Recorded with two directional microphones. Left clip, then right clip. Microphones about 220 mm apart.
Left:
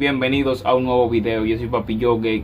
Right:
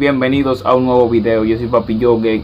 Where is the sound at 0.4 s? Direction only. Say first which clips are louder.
Right 5 dB; 25° left (ahead or behind).